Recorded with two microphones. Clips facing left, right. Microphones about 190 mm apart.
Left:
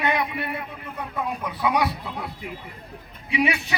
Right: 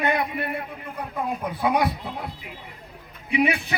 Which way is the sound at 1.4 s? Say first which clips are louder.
Right 1 dB; 50° right (ahead or behind).